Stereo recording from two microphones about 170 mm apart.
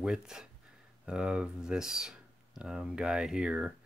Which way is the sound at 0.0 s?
5° right (ahead or behind).